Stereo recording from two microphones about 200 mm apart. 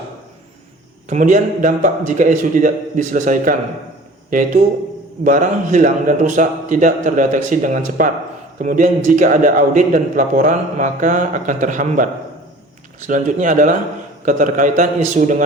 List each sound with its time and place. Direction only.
1.1 s a man's voice: 40° right (ahead or behind)